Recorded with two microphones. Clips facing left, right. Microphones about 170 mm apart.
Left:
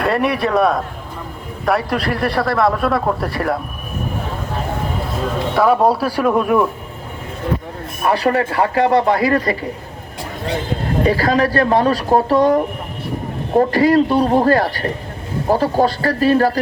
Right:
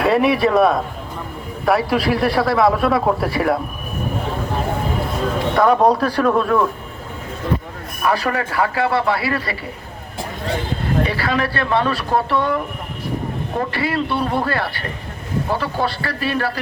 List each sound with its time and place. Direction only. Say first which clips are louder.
0.0 s speech: right 2 dB; centre (ahead or behind)
5.5 s speech: even; 5° left (ahead or behind)
8.0 s speech: left 4 dB; 35° left (ahead or behind)
11.0 s speech: left 5 dB; 40° left (ahead or behind)